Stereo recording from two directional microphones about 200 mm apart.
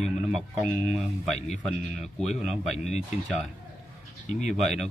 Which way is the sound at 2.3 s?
Centre (ahead or behind).